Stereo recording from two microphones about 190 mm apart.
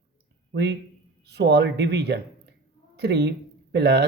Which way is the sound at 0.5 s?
65° right (ahead or behind).